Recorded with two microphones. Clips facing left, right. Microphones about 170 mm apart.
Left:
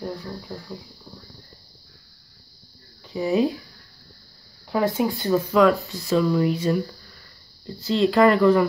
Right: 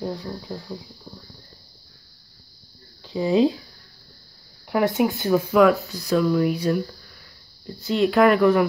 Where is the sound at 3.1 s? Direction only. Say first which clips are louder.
Right 2 dB; 25° right (ahead or behind).